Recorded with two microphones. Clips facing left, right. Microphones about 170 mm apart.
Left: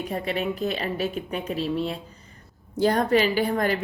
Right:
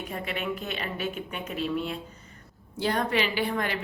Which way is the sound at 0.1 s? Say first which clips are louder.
Left 4 dB; 35° left (ahead or behind).